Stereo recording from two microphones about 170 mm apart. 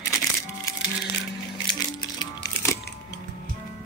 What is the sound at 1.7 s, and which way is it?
Music, 20° left (ahead or behind).